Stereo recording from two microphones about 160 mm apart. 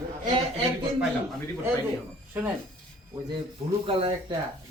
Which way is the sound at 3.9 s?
30° right (ahead or behind).